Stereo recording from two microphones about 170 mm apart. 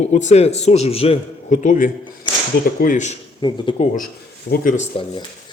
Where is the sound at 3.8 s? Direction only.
55° left (ahead or behind).